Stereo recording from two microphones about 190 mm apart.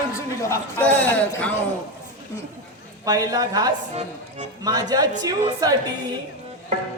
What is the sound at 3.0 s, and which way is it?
Speech, 20° right (ahead or behind).